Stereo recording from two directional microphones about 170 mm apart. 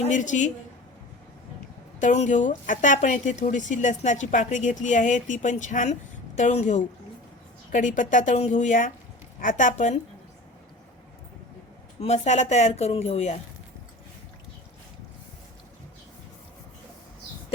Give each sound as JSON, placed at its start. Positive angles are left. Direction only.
{"t": 0.1, "sound": "speech", "side_deg": 45}
{"t": 2.0, "sound": "speech", "side_deg": 45}
{"t": 11.9, "sound": "speech", "side_deg": 40}